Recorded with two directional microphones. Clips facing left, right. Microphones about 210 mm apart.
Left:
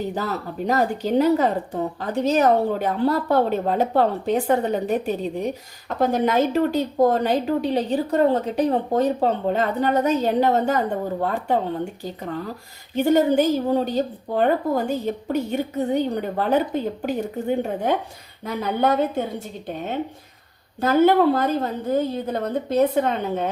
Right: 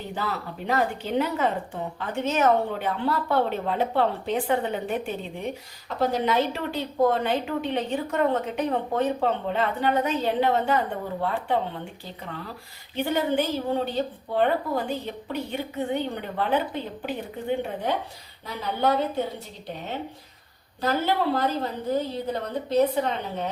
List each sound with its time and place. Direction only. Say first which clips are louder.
0.1 s a woman's voice: left 4 dB; 40° left (ahead or behind)